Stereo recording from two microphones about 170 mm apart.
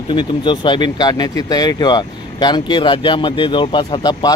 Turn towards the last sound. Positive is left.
turn(degrees=30)  # may be behind; listen again after turning